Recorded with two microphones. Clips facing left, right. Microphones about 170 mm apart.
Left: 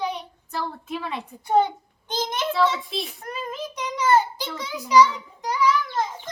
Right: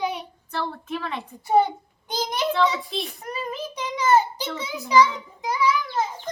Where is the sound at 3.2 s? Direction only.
10° right (ahead or behind).